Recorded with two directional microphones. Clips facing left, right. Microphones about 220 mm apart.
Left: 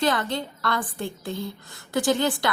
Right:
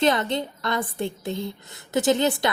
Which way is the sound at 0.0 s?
20° right (ahead or behind).